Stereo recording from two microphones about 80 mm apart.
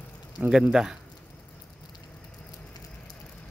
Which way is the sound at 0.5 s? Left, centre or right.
Centre.